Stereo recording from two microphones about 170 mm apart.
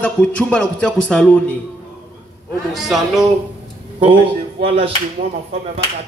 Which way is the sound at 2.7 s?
Centre (ahead or behind).